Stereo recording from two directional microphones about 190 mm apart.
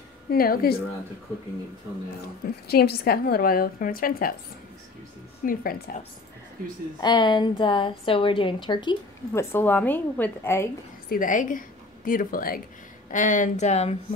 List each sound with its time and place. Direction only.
0.3 s a woman's voice: 50° left (ahead or behind)
2.2 s a woman's voice: 55° left (ahead or behind)
5.4 s a woman's voice: 50° left (ahead or behind)
7.0 s a woman's voice: 25° left (ahead or behind)
11.1 s a woman's voice: 45° left (ahead or behind)